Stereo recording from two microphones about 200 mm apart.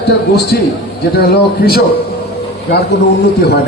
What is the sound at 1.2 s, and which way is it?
Speech, 50° left (ahead or behind).